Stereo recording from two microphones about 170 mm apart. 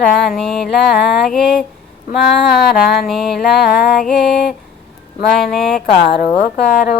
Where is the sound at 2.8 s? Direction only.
Centre (ahead or behind).